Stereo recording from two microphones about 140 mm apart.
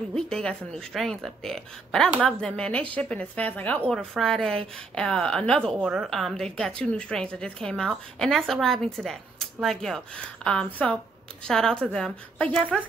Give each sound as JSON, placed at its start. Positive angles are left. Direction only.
{"t": 0.3, "sound": "a woman's voice", "side_deg": 5}
{"t": 5.8, "sound": "a woman's voice", "side_deg": -10}